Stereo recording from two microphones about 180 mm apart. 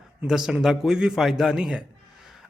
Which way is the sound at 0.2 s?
Centre (ahead or behind).